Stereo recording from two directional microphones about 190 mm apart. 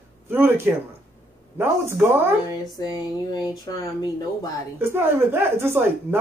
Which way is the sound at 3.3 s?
20° left (ahead or behind).